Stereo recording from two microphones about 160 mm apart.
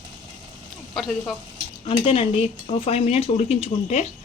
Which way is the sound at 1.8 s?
35° left (ahead or behind).